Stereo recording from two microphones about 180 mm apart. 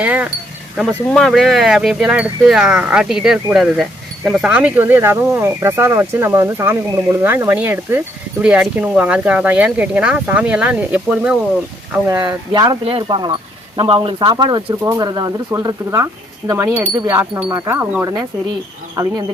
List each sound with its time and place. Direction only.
0.0 s speech: 10° right (ahead or behind)
12.0 s speech: 20° right (ahead or behind)